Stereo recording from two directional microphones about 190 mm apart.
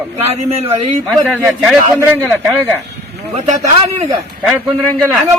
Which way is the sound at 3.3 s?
35° right (ahead or behind).